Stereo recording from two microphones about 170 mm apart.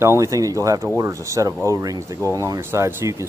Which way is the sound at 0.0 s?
15° right (ahead or behind).